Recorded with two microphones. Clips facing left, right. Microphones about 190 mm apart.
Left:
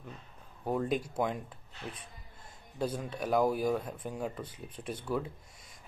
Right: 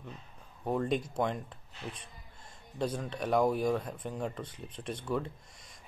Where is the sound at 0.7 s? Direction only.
5° left (ahead or behind).